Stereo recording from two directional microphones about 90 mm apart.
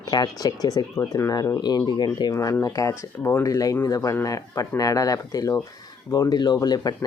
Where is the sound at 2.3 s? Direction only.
40° left (ahead or behind).